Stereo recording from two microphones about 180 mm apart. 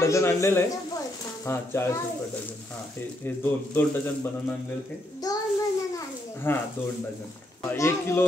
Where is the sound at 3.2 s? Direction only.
10° left (ahead or behind).